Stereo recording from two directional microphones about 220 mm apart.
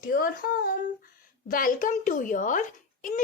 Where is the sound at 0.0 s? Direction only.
40° left (ahead or behind).